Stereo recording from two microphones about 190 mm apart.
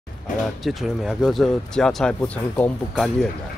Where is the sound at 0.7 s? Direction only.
Centre (ahead or behind).